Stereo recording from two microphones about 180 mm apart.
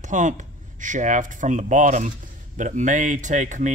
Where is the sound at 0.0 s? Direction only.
45° right (ahead or behind).